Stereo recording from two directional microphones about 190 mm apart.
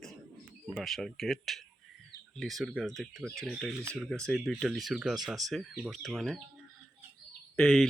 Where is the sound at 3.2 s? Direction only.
15° right (ahead or behind).